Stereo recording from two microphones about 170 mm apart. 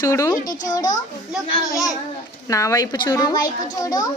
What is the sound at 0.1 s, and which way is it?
Speech, 15° left (ahead or behind).